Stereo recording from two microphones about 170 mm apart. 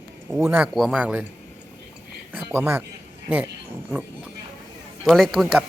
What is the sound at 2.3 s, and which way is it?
Speech, 10° right (ahead or behind).